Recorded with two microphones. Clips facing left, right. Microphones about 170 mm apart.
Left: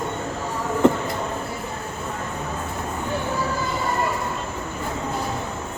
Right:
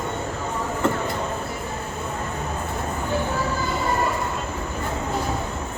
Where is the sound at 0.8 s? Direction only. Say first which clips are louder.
Left 6 dB; 15° left (ahead or behind).